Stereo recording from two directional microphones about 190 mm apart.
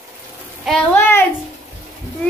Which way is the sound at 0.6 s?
5° left (ahead or behind).